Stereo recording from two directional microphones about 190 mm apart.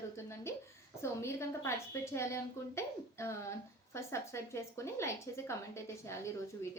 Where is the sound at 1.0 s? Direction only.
15° left (ahead or behind).